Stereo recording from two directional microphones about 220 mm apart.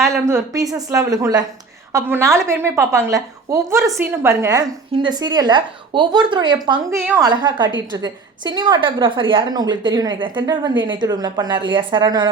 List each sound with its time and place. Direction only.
0.0 s a woman's voice: 10° right (ahead or behind)